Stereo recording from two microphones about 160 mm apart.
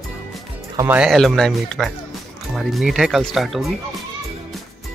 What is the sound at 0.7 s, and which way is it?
Speech, 15° right (ahead or behind).